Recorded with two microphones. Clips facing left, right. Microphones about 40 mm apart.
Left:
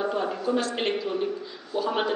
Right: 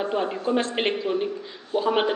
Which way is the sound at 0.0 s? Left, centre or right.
Right.